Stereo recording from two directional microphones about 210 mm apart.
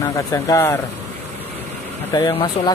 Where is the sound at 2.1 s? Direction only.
20° left (ahead or behind).